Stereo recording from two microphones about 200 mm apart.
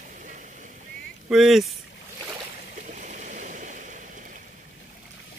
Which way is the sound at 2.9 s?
40° right (ahead or behind).